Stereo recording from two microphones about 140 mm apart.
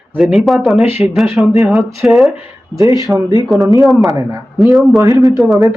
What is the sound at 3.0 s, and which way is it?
Speech, 25° right (ahead or behind).